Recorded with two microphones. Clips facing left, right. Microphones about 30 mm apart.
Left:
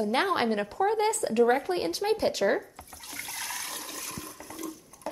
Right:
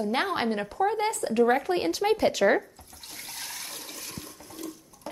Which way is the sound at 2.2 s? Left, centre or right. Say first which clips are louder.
Right 3 dB; right.